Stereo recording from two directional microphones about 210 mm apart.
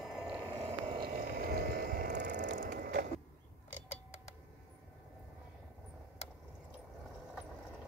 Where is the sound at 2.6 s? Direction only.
45° right (ahead or behind).